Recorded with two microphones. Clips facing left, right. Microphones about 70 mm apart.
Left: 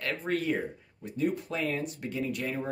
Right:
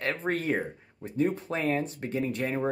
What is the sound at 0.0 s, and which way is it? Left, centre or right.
Speech, right.